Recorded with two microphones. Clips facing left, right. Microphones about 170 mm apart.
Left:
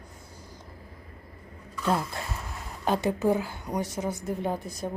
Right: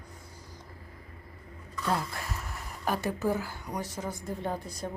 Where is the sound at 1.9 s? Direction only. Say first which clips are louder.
Left 4 dB; 25° left (ahead or behind).